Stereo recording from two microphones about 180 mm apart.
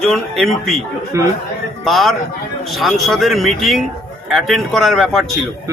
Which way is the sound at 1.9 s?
Centre (ahead or behind).